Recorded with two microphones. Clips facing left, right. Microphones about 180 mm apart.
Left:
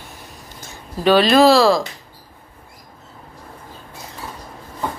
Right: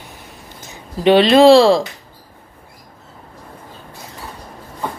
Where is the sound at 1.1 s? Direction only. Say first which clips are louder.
Right 4 dB; 25° right (ahead or behind).